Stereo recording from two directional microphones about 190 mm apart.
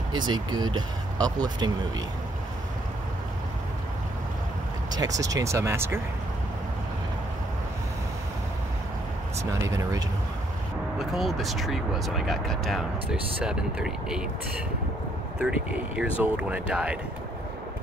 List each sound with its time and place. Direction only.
0.1 s speech: 25° right (ahead or behind)
4.9 s speech: 20° right (ahead or behind)
9.4 s speech: 15° right (ahead or behind)
11.0 s speech: centre (ahead or behind)
16.0 s speech: 5° right (ahead or behind)